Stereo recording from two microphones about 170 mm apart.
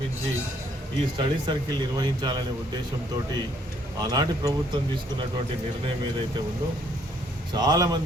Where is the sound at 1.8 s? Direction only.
25° right (ahead or behind).